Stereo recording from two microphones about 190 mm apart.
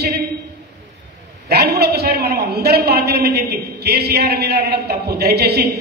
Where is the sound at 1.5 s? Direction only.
55° right (ahead or behind).